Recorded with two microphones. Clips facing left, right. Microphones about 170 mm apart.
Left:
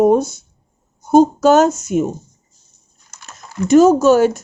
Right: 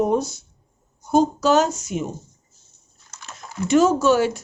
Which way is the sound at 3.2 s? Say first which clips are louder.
Left 6 dB; 45° left (ahead or behind).